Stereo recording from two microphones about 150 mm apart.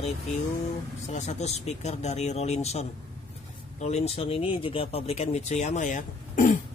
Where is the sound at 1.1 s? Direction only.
50° left (ahead or behind).